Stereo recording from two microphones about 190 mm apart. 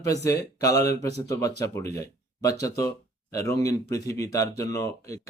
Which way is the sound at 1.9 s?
15° left (ahead or behind).